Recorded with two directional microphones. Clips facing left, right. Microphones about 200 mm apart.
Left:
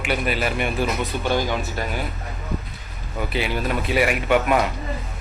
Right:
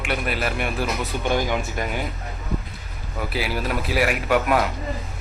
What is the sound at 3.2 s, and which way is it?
A man's voice, 5° right (ahead or behind).